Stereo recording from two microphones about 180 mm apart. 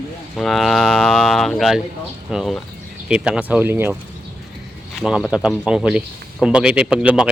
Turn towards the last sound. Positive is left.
turn(degrees=-5)  # may be behind; listen again after turning